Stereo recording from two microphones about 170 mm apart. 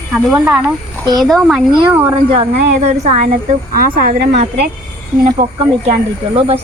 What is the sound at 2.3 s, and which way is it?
A woman's voice, 35° right (ahead or behind).